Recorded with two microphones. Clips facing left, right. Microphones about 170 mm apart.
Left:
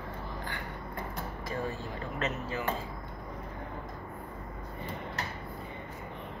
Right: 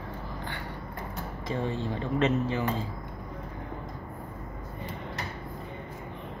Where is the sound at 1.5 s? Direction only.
25° right (ahead or behind).